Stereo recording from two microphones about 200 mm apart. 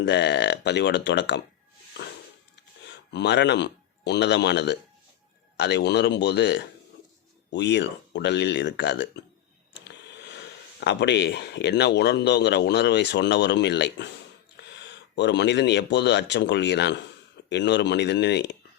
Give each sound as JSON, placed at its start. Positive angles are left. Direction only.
{"t": 0.0, "sound": "speech", "side_deg": 60}
{"t": 3.1, "sound": "speech", "side_deg": 60}